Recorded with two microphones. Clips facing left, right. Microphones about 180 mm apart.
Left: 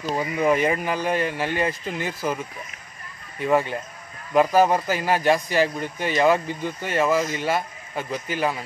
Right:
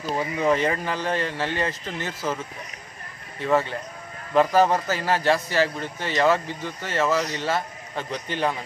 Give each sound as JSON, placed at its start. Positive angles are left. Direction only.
{"t": 0.1, "sound": "a man's voice", "side_deg": 10}